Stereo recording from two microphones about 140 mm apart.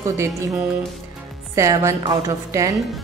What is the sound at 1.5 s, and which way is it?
A woman's voice, 20° right (ahead or behind).